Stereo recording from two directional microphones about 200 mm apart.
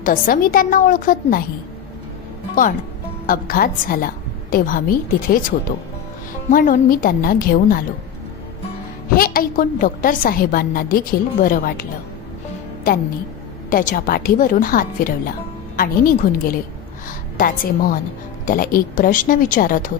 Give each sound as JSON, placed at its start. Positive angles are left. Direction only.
{"t": 0.0, "sound": "a woman's voice", "side_deg": 45}
{"t": 3.2, "sound": "a woman's voice", "side_deg": 45}
{"t": 6.5, "sound": "a woman's voice", "side_deg": 45}
{"t": 9.1, "sound": "a woman's voice", "side_deg": 45}